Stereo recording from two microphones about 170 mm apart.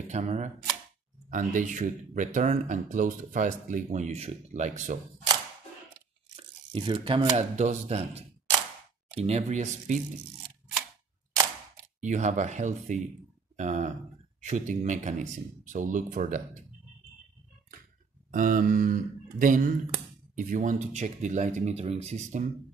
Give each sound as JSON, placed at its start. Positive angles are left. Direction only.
{"t": 0.1, "sound": "speech", "side_deg": -40}
{"t": 6.3, "sound": "tearing", "side_deg": -30}
{"t": 7.2, "sound": "speech", "side_deg": -40}
{"t": 12.0, "sound": "speech", "side_deg": -45}
{"t": 18.3, "sound": "speech", "side_deg": -50}